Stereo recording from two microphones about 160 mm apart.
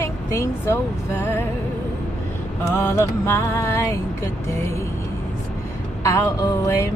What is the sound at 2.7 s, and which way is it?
Music, 15° left (ahead or behind).